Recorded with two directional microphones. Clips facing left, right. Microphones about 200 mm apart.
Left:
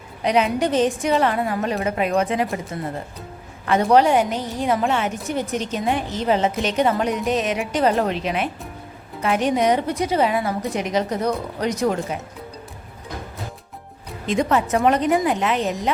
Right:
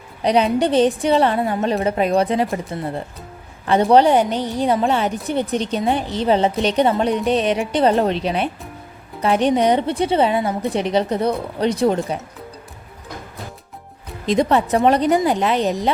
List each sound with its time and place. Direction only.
0.2 s a woman's voice: 35° right (ahead or behind)
14.3 s a woman's voice: 35° right (ahead or behind)